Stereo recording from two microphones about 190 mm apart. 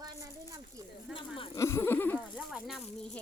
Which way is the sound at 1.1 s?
25° left (ahead or behind).